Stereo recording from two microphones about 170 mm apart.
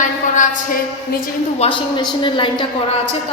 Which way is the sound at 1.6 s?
35° left (ahead or behind).